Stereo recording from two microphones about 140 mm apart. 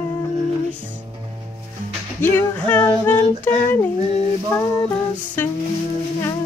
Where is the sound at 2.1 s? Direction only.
15° left (ahead or behind).